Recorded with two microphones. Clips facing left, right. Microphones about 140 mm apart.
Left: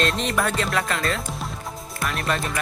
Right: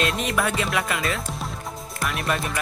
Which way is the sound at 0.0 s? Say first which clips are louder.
Left 1 dB; centre (ahead or behind).